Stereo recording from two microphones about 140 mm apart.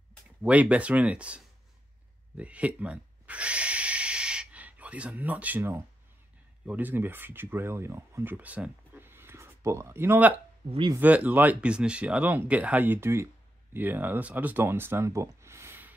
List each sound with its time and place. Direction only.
0.4 s speech: 10° right (ahead or behind)
2.3 s a sound: 10° right (ahead or behind)
6.6 s speech: 10° right (ahead or behind)